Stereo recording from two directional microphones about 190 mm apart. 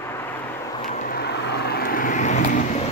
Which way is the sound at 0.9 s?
45° left (ahead or behind).